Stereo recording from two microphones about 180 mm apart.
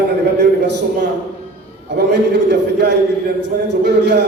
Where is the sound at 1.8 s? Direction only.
70° right (ahead or behind).